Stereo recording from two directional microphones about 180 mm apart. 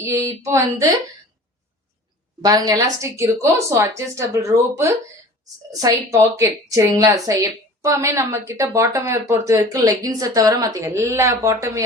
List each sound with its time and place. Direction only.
0.0 s speech: 15° right (ahead or behind)
2.4 s a woman's voice: 20° right (ahead or behind)